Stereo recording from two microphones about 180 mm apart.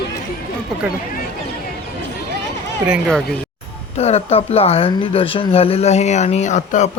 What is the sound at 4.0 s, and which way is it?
Speech, 35° left (ahead or behind).